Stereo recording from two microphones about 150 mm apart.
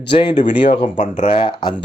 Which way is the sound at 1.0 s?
55° left (ahead or behind).